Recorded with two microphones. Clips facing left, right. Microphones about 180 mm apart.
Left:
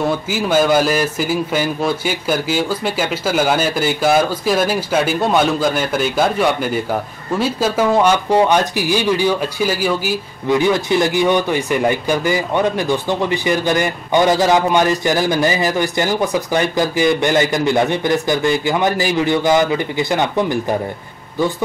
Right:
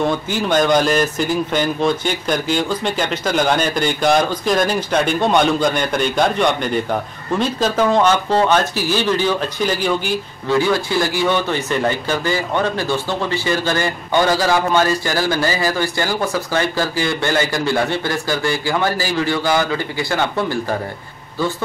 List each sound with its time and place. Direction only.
0.0 s a man's voice: 5° left (ahead or behind)
10.5 s speech: 20° left (ahead or behind)